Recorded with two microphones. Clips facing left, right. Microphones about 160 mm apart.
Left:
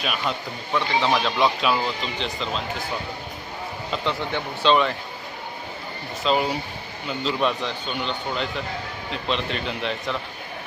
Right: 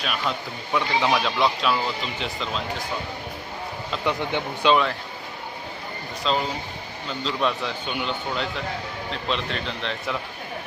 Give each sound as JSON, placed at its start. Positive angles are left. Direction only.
{"t": 0.0, "sound": "a man's voice", "side_deg": 5}
{"t": 4.0, "sound": "speech", "side_deg": -15}
{"t": 4.7, "sound": "a man's voice", "side_deg": 0}
{"t": 6.3, "sound": "a man's voice", "side_deg": 5}